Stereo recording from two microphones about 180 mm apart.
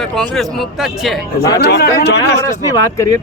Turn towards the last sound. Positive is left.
turn(degrees=20)  # may be behind; listen again after turning